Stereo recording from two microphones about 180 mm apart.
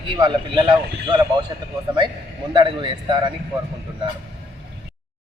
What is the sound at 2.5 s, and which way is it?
Speech, 25° right (ahead or behind).